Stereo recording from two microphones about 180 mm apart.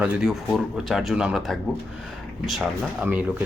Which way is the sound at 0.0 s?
Centre (ahead or behind).